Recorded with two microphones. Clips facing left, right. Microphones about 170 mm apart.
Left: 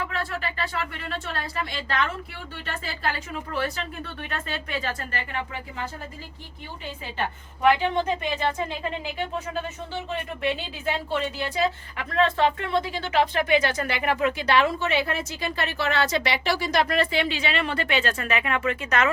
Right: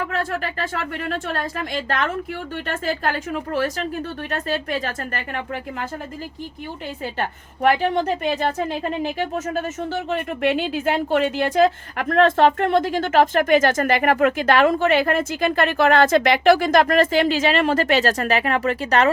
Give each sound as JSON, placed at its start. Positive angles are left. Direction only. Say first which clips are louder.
{"t": 0.0, "sound": "speech", "louder": "right 5 dB", "side_deg": -45}
{"t": 7.2, "sound": "speech", "louder": "right 2 dB", "side_deg": -50}
{"t": 9.1, "sound": "speech", "louder": "right 5 dB", "side_deg": -50}
{"t": 10.1, "sound": "speech", "louder": "right 6 dB", "side_deg": -65}